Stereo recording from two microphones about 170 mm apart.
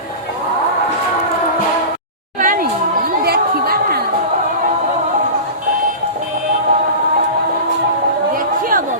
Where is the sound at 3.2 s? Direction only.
65° right (ahead or behind).